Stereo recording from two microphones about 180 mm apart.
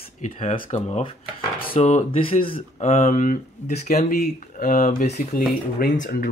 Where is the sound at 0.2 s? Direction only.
45° left (ahead or behind); by 2.6 s 30° left (ahead or behind).